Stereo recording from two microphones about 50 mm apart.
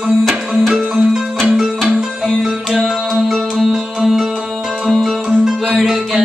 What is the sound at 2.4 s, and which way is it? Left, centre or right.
Music, centre.